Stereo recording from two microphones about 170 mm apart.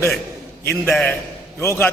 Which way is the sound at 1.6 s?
15° left (ahead or behind).